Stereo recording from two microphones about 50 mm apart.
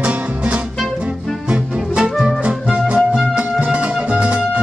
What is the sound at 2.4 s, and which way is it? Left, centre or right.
Music, right.